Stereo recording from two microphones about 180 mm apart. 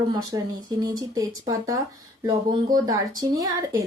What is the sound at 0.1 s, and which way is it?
Speech, 20° right (ahead or behind).